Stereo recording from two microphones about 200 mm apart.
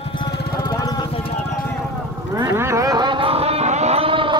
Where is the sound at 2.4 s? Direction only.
15° right (ahead or behind).